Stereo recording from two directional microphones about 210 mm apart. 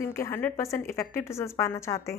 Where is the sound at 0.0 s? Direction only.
15° left (ahead or behind).